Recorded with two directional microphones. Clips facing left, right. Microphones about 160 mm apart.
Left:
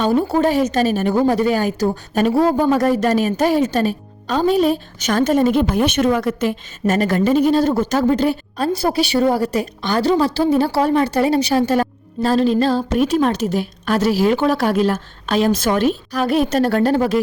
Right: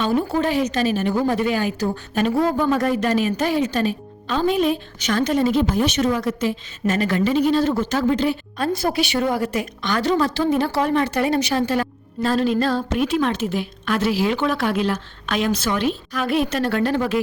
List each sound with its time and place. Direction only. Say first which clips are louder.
0.0 s a woman's voice: left 4 dB; 40° left (ahead or behind)
13.0 s speech: left 4 dB; 40° left (ahead or behind)